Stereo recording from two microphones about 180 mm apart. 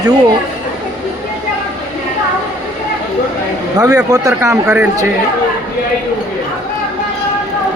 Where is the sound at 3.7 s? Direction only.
20° right (ahead or behind).